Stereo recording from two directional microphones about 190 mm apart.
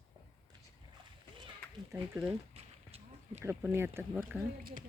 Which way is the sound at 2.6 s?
30° right (ahead or behind).